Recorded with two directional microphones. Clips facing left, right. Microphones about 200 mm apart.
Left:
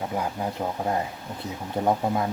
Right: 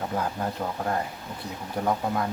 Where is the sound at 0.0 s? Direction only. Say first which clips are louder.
Even; 10° left (ahead or behind).